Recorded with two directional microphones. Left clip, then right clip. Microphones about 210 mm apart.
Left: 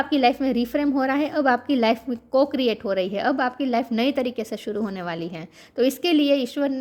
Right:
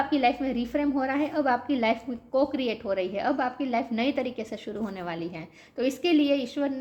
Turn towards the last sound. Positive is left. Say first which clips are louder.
# left 5 dB
turn(degrees=45)  # may be behind; listen again after turning